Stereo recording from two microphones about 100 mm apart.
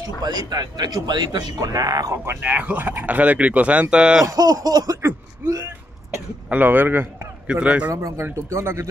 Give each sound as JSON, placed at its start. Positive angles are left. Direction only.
{"t": 0.2, "sound": "a man's voice", "side_deg": -45}
{"t": 2.2, "sound": "speech", "side_deg": -15}
{"t": 4.3, "sound": "a man's voice", "side_deg": -35}
{"t": 5.0, "sound": "a sound", "side_deg": -30}
{"t": 6.5, "sound": "a man's voice", "side_deg": -20}
{"t": 7.9, "sound": "a man's voice", "side_deg": -30}